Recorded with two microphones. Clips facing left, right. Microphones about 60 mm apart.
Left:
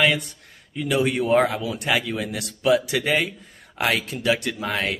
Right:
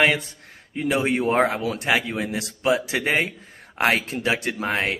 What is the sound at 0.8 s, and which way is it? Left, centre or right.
Speech, right.